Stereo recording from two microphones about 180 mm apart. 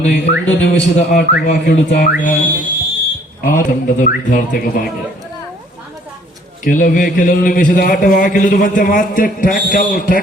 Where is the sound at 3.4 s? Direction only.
50° left (ahead or behind).